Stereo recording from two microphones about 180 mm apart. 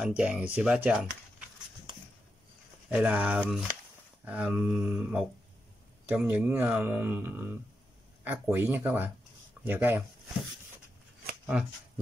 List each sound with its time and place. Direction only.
0.0 s speech: 5° right (ahead or behind)
1.9 s a sound: 25° right (ahead or behind)
2.9 s speech: 10° right (ahead or behind)